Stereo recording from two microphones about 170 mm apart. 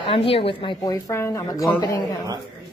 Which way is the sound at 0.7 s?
20° left (ahead or behind).